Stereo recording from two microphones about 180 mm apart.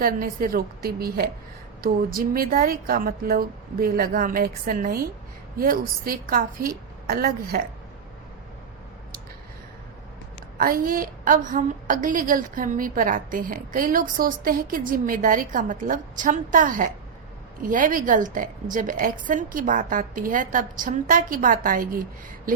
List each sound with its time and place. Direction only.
0.0 s a woman's voice: 55° right (ahead or behind)
10.6 s a woman's voice: 50° right (ahead or behind)